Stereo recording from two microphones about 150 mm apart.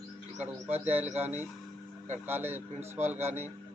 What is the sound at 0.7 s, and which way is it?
Speech, 45° right (ahead or behind).